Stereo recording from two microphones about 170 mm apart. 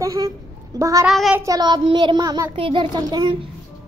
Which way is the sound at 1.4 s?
20° right (ahead or behind).